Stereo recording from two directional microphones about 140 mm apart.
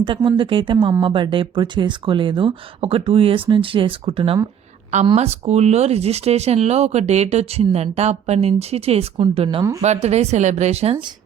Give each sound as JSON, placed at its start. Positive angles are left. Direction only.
{"t": 0.0, "sound": "speech", "side_deg": -35}
{"t": 9.8, "sound": "speech", "side_deg": -50}